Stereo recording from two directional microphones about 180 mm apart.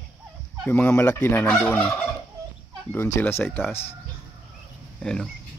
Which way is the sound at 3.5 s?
Centre (ahead or behind).